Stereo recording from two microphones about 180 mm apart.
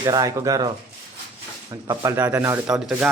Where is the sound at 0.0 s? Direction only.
20° right (ahead or behind).